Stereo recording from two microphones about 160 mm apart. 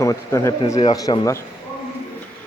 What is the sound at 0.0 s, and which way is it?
Speech, 20° left (ahead or behind).